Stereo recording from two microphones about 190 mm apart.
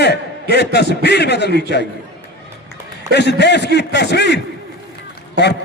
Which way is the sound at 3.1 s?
65° left (ahead or behind).